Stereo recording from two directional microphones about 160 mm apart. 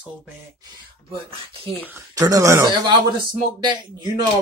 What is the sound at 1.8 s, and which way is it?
A man's voice, 20° right (ahead or behind).